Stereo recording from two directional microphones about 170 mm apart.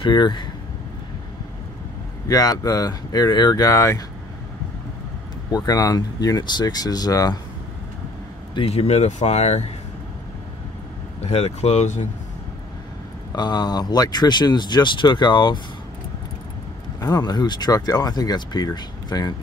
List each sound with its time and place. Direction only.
0.0 s speech: 25° left (ahead or behind)
2.2 s speech: 20° left (ahead or behind)
5.5 s speech: 20° left (ahead or behind)
8.5 s speech: 35° left (ahead or behind)
11.2 s speech: 40° left (ahead or behind)
13.3 s speech: 25° left (ahead or behind)
17.0 s speech: 25° left (ahead or behind)